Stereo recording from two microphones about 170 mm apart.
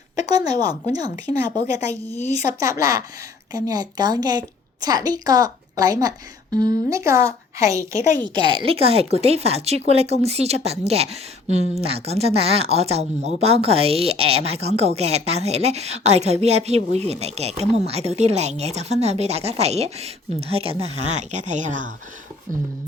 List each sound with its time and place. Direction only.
0.3 s a woman's voice: 20° right (ahead or behind)
2.6 s a woman's voice: 20° right (ahead or behind); by 21.9 s 50° right (ahead or behind)